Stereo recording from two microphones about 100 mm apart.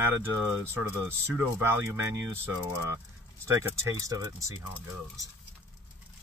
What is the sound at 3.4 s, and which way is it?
Speech, 25° right (ahead or behind).